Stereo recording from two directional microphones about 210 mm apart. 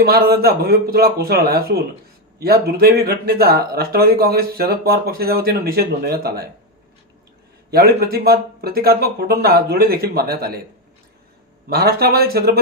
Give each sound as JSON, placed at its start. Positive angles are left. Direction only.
{"t": 0.0, "sound": "speech", "side_deg": -45}
{"t": 7.7, "sound": "speech", "side_deg": -45}
{"t": 11.7, "sound": "speech", "side_deg": -45}